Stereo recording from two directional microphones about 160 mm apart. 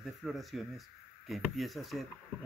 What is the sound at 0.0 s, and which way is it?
Speech, centre (ahead or behind).